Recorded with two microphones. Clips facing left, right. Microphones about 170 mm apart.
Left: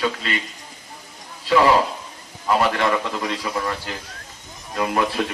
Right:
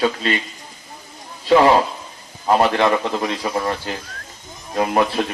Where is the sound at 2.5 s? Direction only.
25° right (ahead or behind).